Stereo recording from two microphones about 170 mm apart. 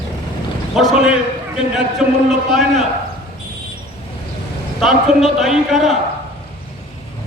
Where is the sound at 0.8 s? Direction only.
Centre (ahead or behind).